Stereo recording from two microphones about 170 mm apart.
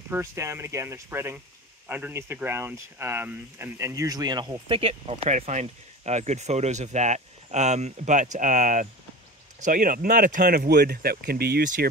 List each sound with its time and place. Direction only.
0.1 s speech: 15° right (ahead or behind); by 11.9 s 60° right (ahead or behind)